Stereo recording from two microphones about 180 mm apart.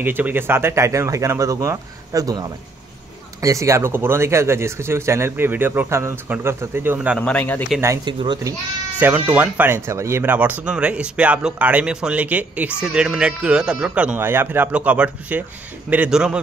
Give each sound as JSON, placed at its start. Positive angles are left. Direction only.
{"t": 0.0, "sound": "speech", "side_deg": -10}
{"t": 7.2, "sound": "a man's voice", "side_deg": 5}
{"t": 7.8, "sound": "speech", "side_deg": -20}
{"t": 9.0, "sound": "speech", "side_deg": -10}